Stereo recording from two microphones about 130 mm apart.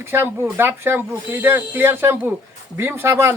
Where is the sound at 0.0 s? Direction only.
20° right (ahead or behind).